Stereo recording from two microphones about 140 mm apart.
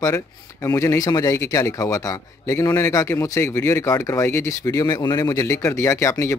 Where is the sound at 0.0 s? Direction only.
25° left (ahead or behind).